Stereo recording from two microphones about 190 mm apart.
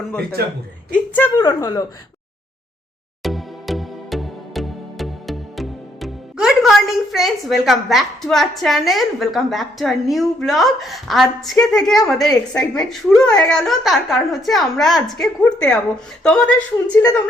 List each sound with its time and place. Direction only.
0.4 s a man's voice: 55° right (ahead or behind)
0.9 s a woman's voice: 10° left (ahead or behind)
1.4 s a woman's voice: 20° left (ahead or behind)
3.2 s music: centre (ahead or behind)
12.7 s a woman's voice: centre (ahead or behind)